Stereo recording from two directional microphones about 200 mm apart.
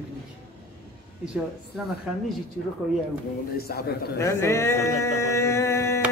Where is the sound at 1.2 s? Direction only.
Centre (ahead or behind).